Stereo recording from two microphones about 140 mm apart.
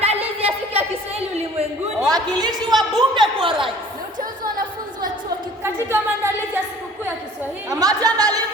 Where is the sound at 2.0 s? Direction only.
25° right (ahead or behind).